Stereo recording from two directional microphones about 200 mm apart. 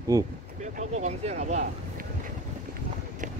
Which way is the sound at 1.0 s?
35° right (ahead or behind).